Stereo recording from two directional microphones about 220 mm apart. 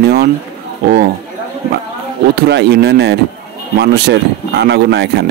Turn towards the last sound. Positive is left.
turn(degrees=-50)  # may be behind; listen again after turning